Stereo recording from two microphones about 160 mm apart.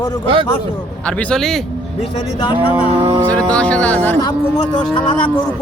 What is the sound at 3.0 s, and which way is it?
Speech, 35° right (ahead or behind).